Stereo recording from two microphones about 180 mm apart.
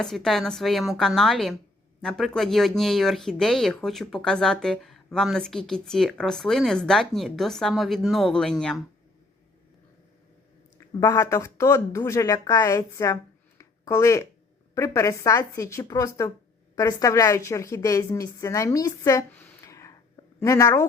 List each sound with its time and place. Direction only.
0.0 s speech: 5° left (ahead or behind)
10.8 s a woman's voice: 15° left (ahead or behind)
13.6 s a sound: 15° left (ahead or behind)
14.8 s a woman's voice: 15° left (ahead or behind)